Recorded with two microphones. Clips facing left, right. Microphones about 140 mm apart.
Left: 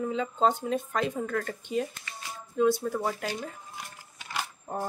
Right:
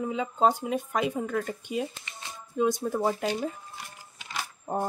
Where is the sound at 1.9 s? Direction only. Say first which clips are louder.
Left 2 dB; 25° right (ahead or behind).